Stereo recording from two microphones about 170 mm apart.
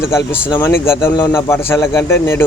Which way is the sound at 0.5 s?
15° left (ahead or behind).